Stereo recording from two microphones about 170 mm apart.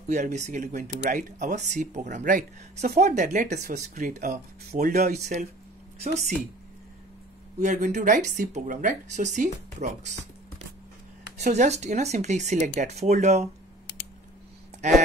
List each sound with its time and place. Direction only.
0.1 s speech: 45° right (ahead or behind)
5.1 s speech: 45° right (ahead or behind)
7.5 s speech: 45° right (ahead or behind)
11.3 s speech: 40° right (ahead or behind)
14.8 s speech: 45° right (ahead or behind)